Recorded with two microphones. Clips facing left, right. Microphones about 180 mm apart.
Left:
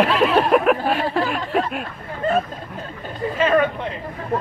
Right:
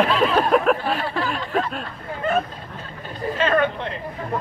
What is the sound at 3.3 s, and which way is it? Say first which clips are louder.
Speech: left 2 dB; 10° left (ahead or behind).